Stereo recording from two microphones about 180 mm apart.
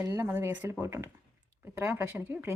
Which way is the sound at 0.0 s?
15° right (ahead or behind).